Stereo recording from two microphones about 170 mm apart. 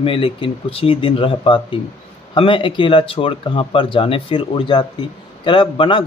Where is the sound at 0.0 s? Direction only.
30° left (ahead or behind).